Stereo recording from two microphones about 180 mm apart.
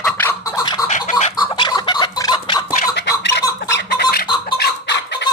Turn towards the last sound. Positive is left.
turn(degrees=70)  # may be behind; listen again after turning